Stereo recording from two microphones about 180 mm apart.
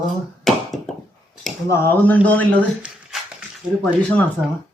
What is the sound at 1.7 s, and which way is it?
Speech, 10° left (ahead or behind).